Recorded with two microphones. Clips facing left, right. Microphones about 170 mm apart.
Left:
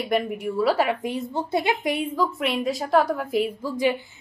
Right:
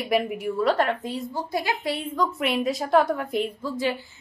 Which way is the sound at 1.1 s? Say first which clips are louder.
Left 3 dB; 20° left (ahead or behind).